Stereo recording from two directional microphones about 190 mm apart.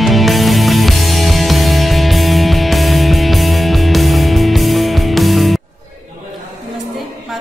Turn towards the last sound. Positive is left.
turn(degrees=0)  # may be behind; listen again after turning